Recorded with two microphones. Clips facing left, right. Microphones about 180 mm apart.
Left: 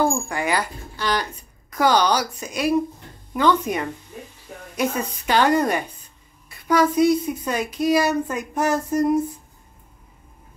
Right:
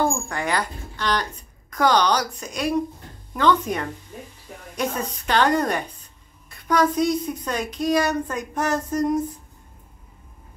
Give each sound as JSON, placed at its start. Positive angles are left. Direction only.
{"t": 0.3, "sound": "a woman's voice", "side_deg": 10}